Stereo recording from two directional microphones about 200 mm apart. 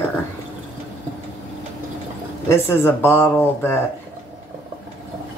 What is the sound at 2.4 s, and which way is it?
Speech, 10° left (ahead or behind).